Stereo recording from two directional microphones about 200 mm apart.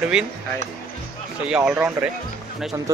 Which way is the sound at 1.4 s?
5° right (ahead or behind).